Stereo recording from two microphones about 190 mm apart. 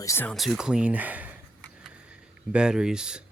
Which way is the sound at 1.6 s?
5° right (ahead or behind).